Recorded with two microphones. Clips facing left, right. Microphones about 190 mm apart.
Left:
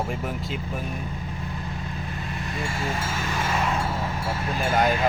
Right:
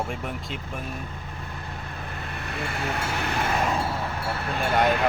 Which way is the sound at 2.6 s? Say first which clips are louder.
Even; 60° right (ahead or behind).